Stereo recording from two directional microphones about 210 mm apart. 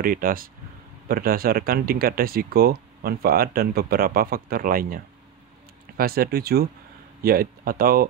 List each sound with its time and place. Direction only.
0.0 s speech: 40° right (ahead or behind)